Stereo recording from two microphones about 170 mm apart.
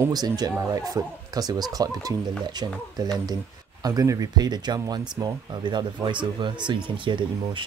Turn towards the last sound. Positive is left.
turn(degrees=-30)  # may be behind; listen again after turning